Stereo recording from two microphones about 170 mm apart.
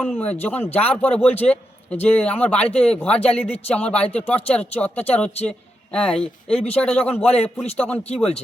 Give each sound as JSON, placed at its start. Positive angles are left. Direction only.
{"t": 0.2, "sound": "a man's voice", "side_deg": 10}